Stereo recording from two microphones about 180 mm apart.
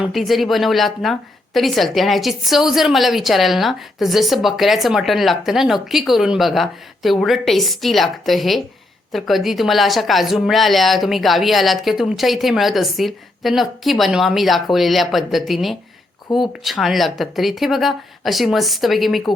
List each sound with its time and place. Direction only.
0.0 s a woman's voice: centre (ahead or behind)